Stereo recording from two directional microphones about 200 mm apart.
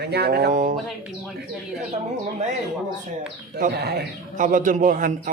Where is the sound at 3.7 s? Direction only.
55° right (ahead or behind).